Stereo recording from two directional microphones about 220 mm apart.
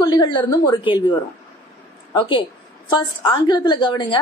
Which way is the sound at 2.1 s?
20° left (ahead or behind).